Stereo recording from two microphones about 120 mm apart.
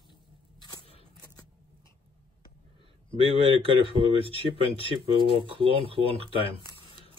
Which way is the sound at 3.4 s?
50° right (ahead or behind).